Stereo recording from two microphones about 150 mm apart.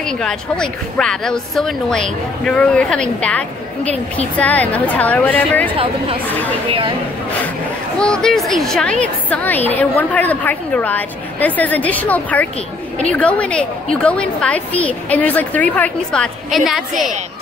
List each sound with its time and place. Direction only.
0.0 s a woman's voice: 5° left (ahead or behind)
5.8 s a woman's voice: 35° right (ahead or behind)
6.2 s a woman's voice: 10° left (ahead or behind)
8.0 s a woman's voice: 5° left (ahead or behind)